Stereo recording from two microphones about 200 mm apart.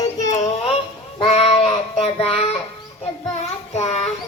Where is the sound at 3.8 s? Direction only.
30° left (ahead or behind).